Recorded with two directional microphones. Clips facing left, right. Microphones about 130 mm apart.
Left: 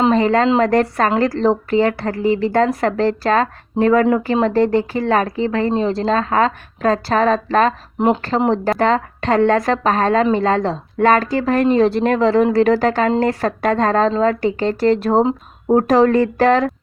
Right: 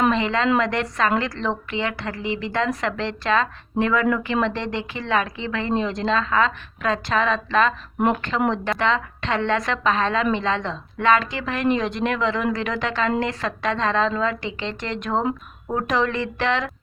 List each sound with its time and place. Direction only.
0.1 s a woman's voice: 45° left (ahead or behind)
7.9 s speech: 25° left (ahead or behind)
8.4 s a woman's voice: 35° left (ahead or behind)
15.7 s a woman's voice: 40° left (ahead or behind)